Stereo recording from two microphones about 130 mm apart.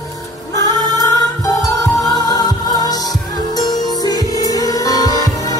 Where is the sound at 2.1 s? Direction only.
30° left (ahead or behind).